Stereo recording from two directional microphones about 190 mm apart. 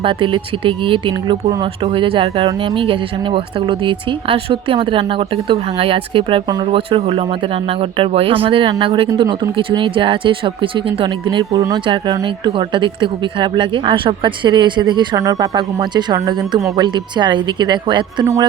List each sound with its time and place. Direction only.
0.0 s speech: 25° right (ahead or behind)